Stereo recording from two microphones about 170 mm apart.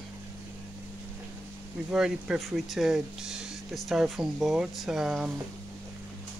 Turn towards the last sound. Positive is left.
turn(degrees=-5)  # may be behind; listen again after turning